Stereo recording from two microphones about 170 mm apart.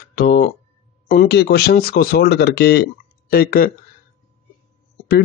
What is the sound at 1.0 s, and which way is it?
Speech, 75° left (ahead or behind).